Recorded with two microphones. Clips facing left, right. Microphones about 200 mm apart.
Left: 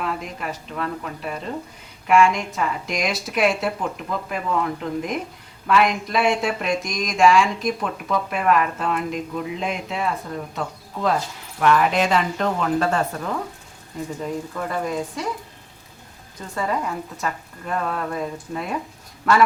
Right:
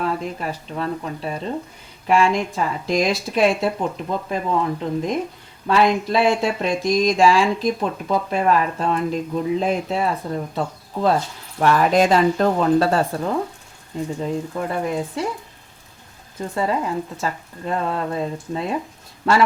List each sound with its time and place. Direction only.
0.0 s speech: 35° right (ahead or behind)
16.6 s speech: 30° right (ahead or behind)